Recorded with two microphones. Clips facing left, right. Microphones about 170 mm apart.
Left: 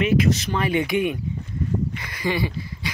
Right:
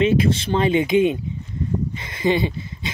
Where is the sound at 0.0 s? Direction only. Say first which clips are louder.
Right 2 dB; 25° right (ahead or behind).